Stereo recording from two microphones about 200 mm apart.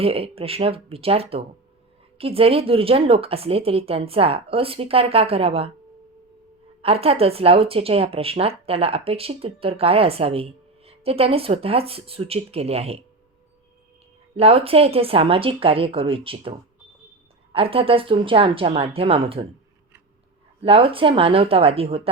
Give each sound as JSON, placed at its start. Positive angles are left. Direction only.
{"t": 0.0, "sound": "speech", "side_deg": -30}
{"t": 6.8, "sound": "speech", "side_deg": -30}
{"t": 14.3, "sound": "speech", "side_deg": -30}
{"t": 20.6, "sound": "speech", "side_deg": -25}